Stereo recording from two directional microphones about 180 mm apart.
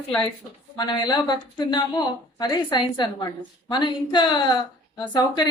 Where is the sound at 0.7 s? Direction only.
20° left (ahead or behind).